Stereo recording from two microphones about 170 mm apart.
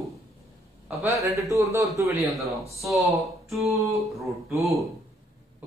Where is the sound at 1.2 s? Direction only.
20° right (ahead or behind).